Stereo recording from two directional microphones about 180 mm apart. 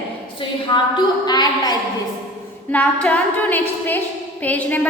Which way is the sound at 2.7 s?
5° left (ahead or behind).